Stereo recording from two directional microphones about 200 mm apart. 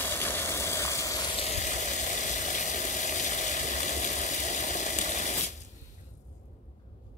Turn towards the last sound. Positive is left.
turn(degrees=40)  # may be behind; listen again after turning